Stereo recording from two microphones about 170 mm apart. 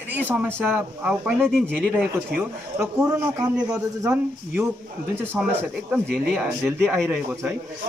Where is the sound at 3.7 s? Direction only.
10° right (ahead or behind).